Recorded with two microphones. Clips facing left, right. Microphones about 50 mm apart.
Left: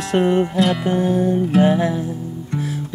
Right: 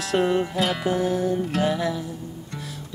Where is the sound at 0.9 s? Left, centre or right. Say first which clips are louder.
Left 5 dB; centre.